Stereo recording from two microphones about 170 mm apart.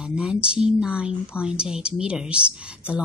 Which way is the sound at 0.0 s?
5° right (ahead or behind).